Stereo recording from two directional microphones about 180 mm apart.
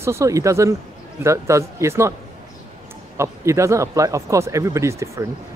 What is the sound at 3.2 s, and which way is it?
Speech, 15° right (ahead or behind).